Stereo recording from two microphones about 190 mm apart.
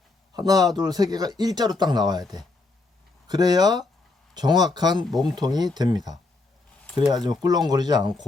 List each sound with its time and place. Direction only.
0.3 s speech: 20° right (ahead or behind)
3.2 s speech: 20° right (ahead or behind)
7.1 s speech: 20° right (ahead or behind)